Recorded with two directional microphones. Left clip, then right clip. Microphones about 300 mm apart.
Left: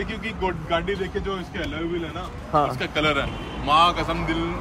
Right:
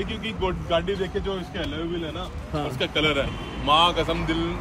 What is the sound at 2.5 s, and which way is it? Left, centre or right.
Speech, centre.